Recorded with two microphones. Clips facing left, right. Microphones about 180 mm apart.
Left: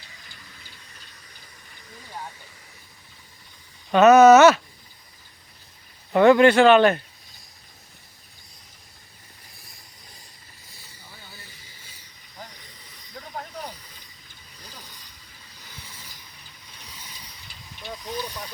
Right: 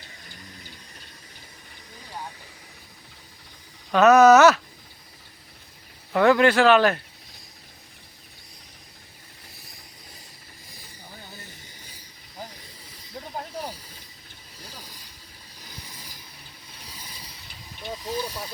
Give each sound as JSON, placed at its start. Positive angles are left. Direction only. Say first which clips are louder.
{"t": 3.9, "sound": "speech", "louder": "left 2 dB", "side_deg": 0}
{"t": 6.1, "sound": "speech", "louder": "left 3 dB", "side_deg": 0}
{"t": 13.2, "sound": "snake", "louder": "right 3 dB", "side_deg": -30}
{"t": 13.6, "sound": "snake", "louder": "right 2 dB", "side_deg": -10}
{"t": 14.6, "sound": "a sound", "louder": "right 2 dB", "side_deg": -10}
{"t": 15.6, "sound": "vehicle", "louder": "right 2 dB", "side_deg": -15}
{"t": 18.0, "sound": "hiss", "louder": "right 2 dB", "side_deg": -5}